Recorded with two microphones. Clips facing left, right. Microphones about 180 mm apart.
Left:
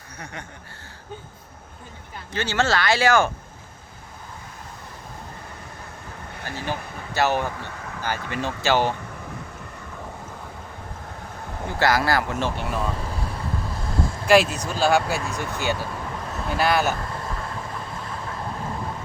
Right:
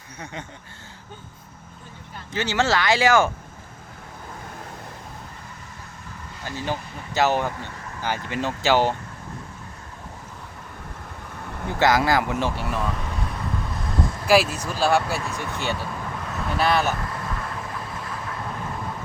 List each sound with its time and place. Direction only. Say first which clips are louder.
2.3 s speech: right 1 dB; 15° right (ahead or behind)
6.3 s vehicle: right 1 dB; 60° left (ahead or behind)
6.7 s speech: right 1 dB; 15° right (ahead or behind)
11.8 s speech: right 2 dB; 20° right (ahead or behind)
12.5 s speech: even; centre (ahead or behind)
12.9 s vehicle: even; 30° left (ahead or behind)
14.3 s speech: left 2 dB; 5° right (ahead or behind)
16.9 s vehicle: even; 25° left (ahead or behind)
17.7 s vehicle: even; centre (ahead or behind)